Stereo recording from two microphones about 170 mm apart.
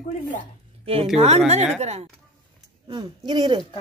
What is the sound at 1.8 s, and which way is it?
Speech, 40° right (ahead or behind).